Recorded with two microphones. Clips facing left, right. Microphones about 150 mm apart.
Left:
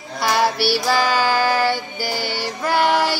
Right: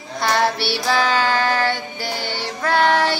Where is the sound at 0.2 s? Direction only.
5° left (ahead or behind).